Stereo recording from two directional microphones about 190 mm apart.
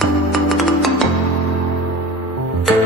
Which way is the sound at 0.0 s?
Centre (ahead or behind).